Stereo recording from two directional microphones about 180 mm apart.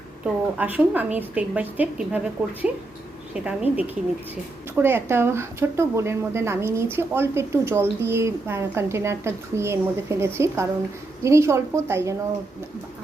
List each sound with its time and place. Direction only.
0.6 s a woman's voice: 10° right (ahead or behind)